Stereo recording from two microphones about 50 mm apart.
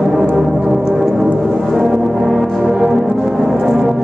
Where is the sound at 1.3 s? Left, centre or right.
Centre.